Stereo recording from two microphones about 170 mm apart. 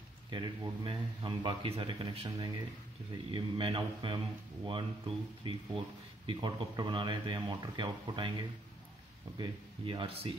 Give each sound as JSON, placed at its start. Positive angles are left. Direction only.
{"t": 0.3, "sound": "speech", "side_deg": -30}